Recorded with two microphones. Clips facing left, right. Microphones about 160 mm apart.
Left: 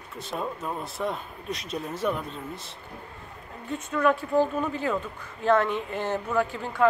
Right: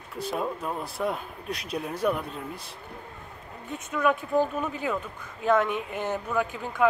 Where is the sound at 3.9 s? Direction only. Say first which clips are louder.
Left 1 dB; 10° right (ahead or behind).